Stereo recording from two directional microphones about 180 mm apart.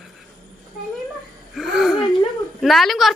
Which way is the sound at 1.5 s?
Centre (ahead or behind).